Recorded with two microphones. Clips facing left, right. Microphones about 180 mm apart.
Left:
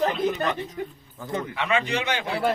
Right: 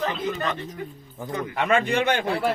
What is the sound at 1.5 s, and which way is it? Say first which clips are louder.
Speech: right 5 dB; 50° right (ahead or behind).